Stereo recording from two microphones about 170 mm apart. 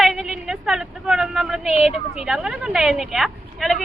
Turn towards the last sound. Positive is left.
turn(degrees=0)  # may be behind; listen again after turning